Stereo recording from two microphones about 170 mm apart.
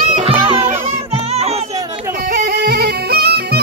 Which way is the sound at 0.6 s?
15° right (ahead or behind).